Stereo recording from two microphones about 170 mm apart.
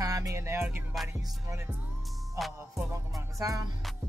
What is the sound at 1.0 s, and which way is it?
Speech, 15° right (ahead or behind).